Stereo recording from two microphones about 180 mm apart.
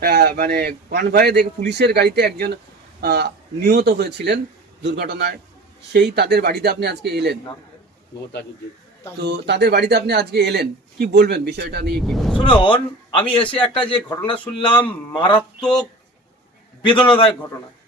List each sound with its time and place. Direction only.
0.0 s a man's voice: 60° right (ahead or behind)
9.2 s a man's voice: 70° right (ahead or behind)
11.9 s speech: centre (ahead or behind)
12.4 s a man's voice: 25° left (ahead or behind)
15.4 s speech: 5° left (ahead or behind)